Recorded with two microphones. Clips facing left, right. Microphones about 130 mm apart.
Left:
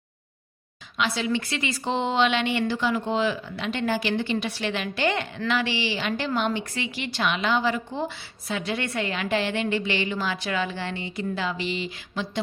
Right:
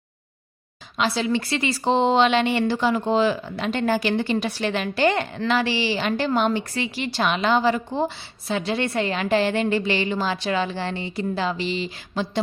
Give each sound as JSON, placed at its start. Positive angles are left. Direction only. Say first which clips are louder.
{"t": 0.9, "sound": "a woman's voice", "louder": "right 3 dB", "side_deg": -35}